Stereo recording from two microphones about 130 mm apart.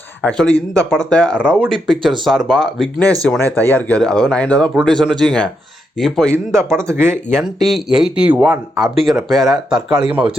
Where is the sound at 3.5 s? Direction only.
25° right (ahead or behind).